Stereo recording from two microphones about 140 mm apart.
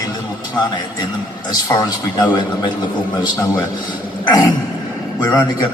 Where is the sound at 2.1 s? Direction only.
30° left (ahead or behind).